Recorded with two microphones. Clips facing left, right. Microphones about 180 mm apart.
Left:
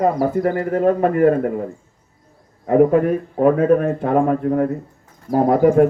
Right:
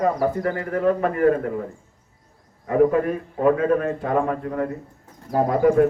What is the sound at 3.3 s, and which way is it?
A man's voice, 40° left (ahead or behind).